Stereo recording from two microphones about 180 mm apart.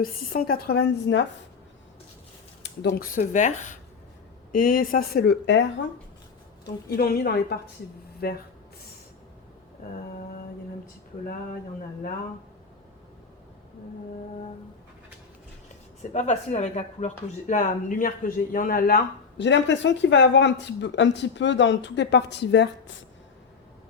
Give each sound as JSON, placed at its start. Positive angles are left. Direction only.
{"t": 0.0, "sound": "speech", "side_deg": 55}
{"t": 2.6, "sound": "speech", "side_deg": 65}
{"t": 6.7, "sound": "speech", "side_deg": 60}
{"t": 16.1, "sound": "speech", "side_deg": 40}
{"t": 19.4, "sound": "speech", "side_deg": 85}